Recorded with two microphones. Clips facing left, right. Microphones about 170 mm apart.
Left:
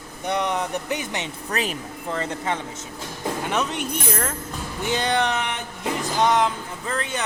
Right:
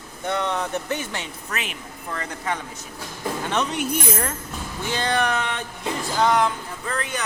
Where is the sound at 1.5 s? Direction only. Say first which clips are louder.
Left 7 dB; 35° left (ahead or behind).